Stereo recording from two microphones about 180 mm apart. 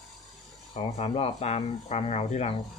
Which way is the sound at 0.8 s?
35° left (ahead or behind).